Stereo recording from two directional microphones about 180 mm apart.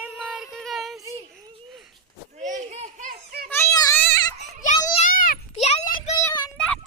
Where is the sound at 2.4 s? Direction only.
40° right (ahead or behind).